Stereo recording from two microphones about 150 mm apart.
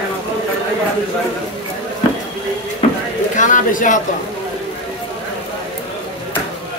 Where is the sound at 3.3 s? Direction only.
60° left (ahead or behind).